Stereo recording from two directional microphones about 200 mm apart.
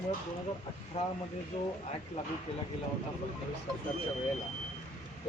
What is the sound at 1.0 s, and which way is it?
Speech, 30° left (ahead or behind).